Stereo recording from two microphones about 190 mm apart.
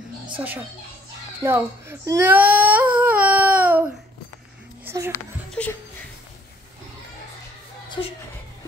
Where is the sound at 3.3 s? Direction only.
10° right (ahead or behind).